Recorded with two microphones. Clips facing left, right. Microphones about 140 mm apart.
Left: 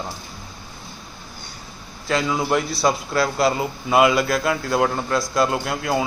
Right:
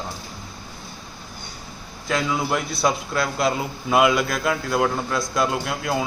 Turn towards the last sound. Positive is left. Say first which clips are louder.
# left 2 dB
turn(degrees=0)  # may be behind; listen again after turning